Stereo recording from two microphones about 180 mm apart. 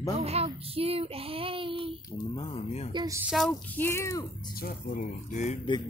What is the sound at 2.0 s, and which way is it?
Speech, 25° left (ahead or behind).